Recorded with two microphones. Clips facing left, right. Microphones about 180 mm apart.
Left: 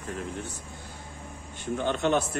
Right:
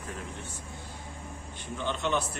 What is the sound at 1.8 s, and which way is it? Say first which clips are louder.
Speech: left 5 dB; 50° left (ahead or behind).